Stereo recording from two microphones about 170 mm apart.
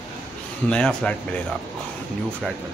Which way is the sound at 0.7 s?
5° left (ahead or behind).